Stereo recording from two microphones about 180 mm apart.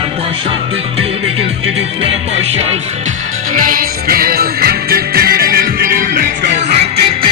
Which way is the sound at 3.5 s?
50° right (ahead or behind).